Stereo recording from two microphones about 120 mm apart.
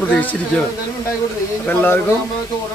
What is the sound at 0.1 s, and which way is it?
Speech, 10° left (ahead or behind).